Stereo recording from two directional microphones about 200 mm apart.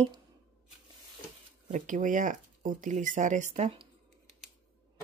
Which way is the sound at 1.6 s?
40° right (ahead or behind).